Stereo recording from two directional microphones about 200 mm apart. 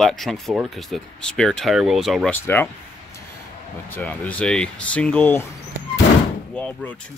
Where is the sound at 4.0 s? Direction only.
5° left (ahead or behind).